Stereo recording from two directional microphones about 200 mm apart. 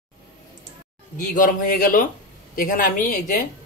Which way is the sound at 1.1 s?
40° left (ahead or behind).